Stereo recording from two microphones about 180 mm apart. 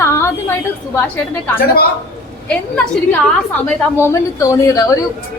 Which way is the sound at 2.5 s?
5° left (ahead or behind).